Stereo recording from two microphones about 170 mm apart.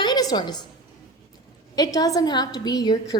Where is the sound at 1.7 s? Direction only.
25° left (ahead or behind).